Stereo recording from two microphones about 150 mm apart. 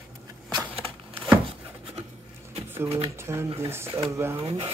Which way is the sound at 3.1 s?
15° right (ahead or behind).